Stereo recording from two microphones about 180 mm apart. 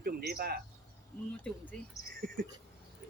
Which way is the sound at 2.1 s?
50° right (ahead or behind).